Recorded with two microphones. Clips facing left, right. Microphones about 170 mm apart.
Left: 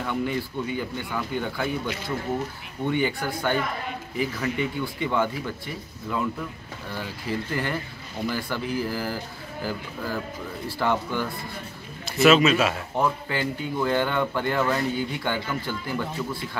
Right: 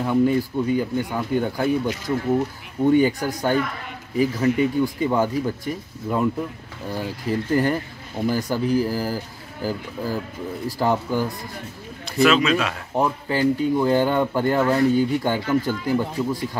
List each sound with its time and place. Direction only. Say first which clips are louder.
0.0 s speech: right 8 dB; 35° right (ahead or behind)
12.2 s speech: even; 5° left (ahead or behind)
12.9 s speech: right 3 dB; 35° right (ahead or behind)